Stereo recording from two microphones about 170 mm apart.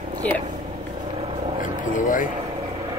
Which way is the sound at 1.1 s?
35° right (ahead or behind).